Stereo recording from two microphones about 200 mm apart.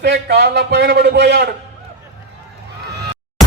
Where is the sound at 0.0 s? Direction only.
55° right (ahead or behind).